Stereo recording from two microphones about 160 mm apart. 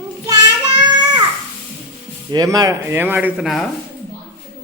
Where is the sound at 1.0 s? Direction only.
25° right (ahead or behind).